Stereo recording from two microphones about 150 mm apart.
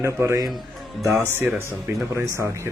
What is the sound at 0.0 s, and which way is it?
A man's voice, 20° right (ahead or behind).